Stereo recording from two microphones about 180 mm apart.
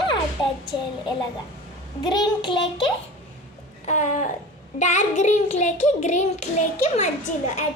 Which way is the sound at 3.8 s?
40° left (ahead or behind).